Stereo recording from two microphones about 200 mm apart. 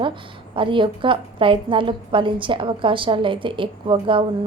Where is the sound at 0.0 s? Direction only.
25° right (ahead or behind).